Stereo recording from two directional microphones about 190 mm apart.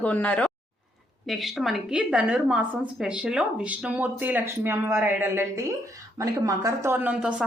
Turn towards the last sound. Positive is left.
turn(degrees=-5)  # may be behind; listen again after turning